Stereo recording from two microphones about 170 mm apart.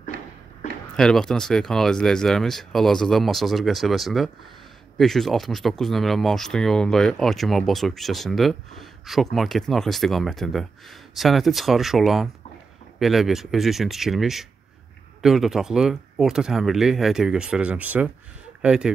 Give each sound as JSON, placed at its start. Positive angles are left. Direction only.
{"t": 0.9, "sound": "speech", "side_deg": 5}